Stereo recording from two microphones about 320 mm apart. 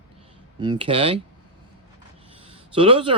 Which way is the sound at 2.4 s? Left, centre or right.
Centre.